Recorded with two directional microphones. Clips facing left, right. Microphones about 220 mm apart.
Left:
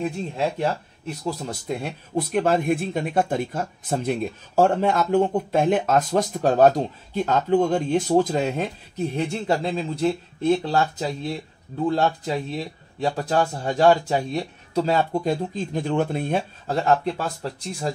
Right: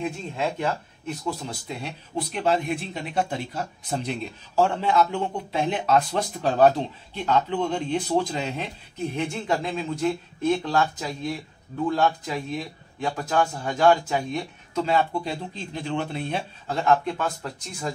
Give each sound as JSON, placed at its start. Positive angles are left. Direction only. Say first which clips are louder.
{"t": 0.4, "sound": "speech", "louder": "left 2 dB", "side_deg": 35}
{"t": 1.7, "sound": "speech", "louder": "left 6 dB", "side_deg": 50}